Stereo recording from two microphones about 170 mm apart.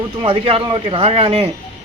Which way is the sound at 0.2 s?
35° right (ahead or behind).